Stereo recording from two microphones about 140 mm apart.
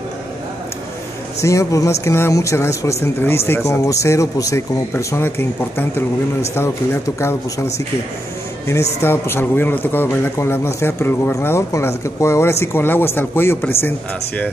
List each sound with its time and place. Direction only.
1.4 s a man's voice: 20° left (ahead or behind)
9.0 s a man's voice: 15° left (ahead or behind)